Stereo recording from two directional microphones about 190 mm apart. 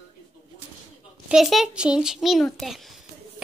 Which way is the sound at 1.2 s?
Centre (ahead or behind).